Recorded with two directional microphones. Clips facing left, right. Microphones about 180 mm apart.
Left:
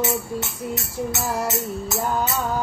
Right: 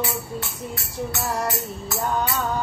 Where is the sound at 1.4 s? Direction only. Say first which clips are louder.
Left 2 dB; 20° left (ahead or behind).